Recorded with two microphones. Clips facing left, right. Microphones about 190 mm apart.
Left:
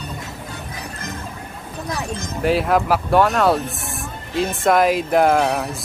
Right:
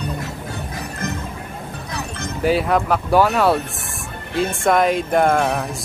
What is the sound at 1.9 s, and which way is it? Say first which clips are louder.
Music: left 5 dB; 60° right (ahead or behind).